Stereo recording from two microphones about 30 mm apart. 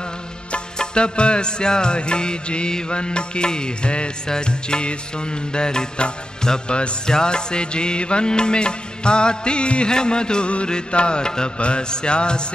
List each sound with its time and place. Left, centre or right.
0.7 s music: left
6.7 s music: left
7.1 s music: left